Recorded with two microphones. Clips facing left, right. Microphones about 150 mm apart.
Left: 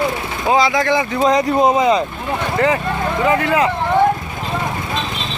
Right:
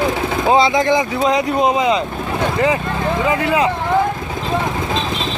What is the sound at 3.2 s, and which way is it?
Speech, 15° right (ahead or behind).